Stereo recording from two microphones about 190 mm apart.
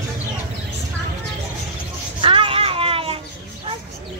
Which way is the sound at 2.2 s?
25° right (ahead or behind).